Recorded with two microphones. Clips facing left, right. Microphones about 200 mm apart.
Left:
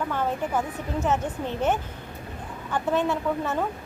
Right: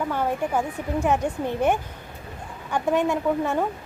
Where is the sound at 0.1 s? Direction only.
10° right (ahead or behind).